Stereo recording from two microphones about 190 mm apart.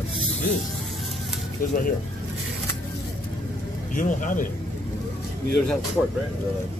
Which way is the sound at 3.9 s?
45° left (ahead or behind).